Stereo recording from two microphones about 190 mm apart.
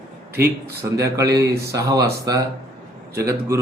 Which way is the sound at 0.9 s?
15° right (ahead or behind).